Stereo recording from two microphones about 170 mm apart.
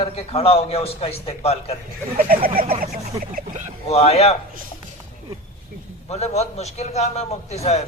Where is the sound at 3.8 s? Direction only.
40° left (ahead or behind).